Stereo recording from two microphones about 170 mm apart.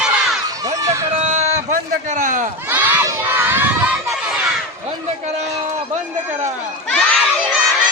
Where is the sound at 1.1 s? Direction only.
40° right (ahead or behind).